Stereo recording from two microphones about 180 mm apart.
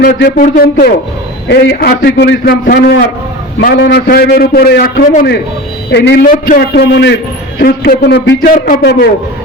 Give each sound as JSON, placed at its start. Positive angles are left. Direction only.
{"t": 0.3, "sound": "a sound", "side_deg": 50}
{"t": 1.5, "sound": "a man's voice", "side_deg": 70}
{"t": 5.9, "sound": "a man's voice", "side_deg": 75}
{"t": 6.2, "sound": "a man's voice", "side_deg": 50}
{"t": 8.5, "sound": "a sound", "side_deg": 45}
{"t": 8.8, "sound": "a man's voice", "side_deg": 70}